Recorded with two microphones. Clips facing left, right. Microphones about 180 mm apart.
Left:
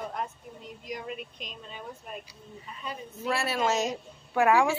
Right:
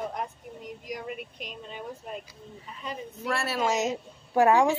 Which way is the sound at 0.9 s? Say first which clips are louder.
Even; 10° right (ahead or behind).